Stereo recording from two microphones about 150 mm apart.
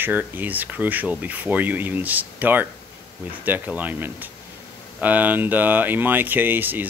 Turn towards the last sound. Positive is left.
turn(degrees=-15)  # may be behind; listen again after turning